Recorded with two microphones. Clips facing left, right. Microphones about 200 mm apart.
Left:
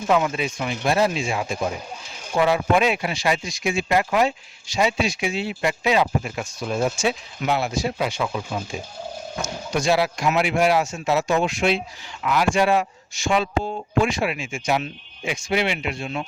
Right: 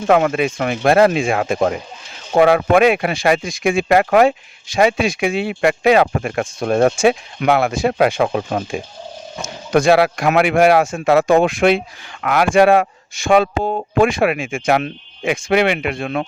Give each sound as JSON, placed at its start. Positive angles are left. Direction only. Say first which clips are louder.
{"t": 0.1, "sound": "speech", "louder": "right 7 dB", "side_deg": -60}